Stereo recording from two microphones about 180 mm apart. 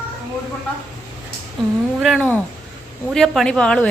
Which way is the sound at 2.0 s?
Centre (ahead or behind).